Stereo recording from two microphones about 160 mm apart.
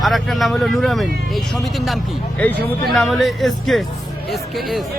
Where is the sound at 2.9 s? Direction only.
Centre (ahead or behind).